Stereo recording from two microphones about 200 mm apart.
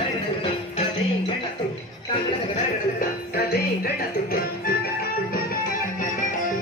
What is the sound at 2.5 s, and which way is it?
Music, 45° left (ahead or behind).